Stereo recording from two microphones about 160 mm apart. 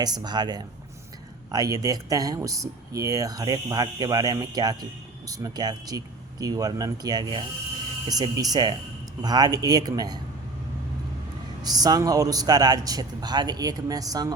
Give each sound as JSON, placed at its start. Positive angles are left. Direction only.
{"t": 0.0, "sound": "speech", "side_deg": -25}
{"t": 11.6, "sound": "speech", "side_deg": -25}